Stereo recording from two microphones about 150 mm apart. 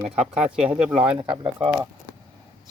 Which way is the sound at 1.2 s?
35° right (ahead or behind).